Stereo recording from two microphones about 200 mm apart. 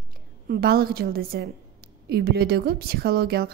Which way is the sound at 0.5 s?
50° right (ahead or behind).